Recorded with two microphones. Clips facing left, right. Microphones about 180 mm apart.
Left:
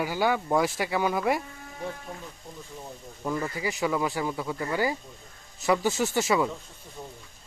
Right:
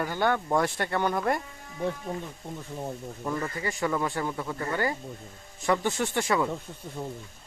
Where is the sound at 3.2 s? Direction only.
10° left (ahead or behind).